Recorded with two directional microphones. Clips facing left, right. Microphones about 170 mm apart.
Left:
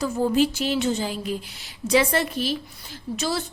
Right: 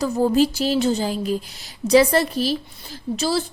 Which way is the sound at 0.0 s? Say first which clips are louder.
Right 3 dB; 40° right (ahead or behind).